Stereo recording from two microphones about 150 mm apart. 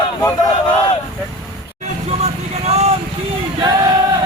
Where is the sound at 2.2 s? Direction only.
45° right (ahead or behind).